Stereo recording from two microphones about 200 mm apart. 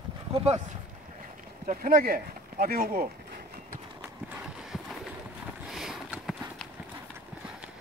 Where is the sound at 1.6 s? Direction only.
45° right (ahead or behind).